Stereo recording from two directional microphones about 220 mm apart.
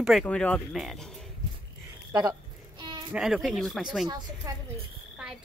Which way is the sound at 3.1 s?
Centre (ahead or behind).